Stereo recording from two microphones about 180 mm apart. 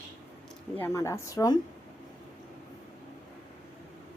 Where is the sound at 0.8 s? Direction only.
15° left (ahead or behind).